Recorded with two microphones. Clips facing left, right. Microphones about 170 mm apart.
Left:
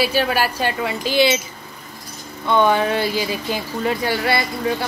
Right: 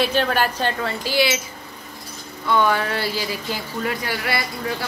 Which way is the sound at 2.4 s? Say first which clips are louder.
Left 3 dB; 20° left (ahead or behind).